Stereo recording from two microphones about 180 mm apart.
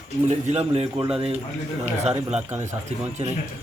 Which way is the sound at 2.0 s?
35° right (ahead or behind).